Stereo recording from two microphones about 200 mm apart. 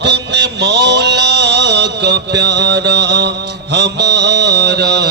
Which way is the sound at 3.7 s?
55° right (ahead or behind).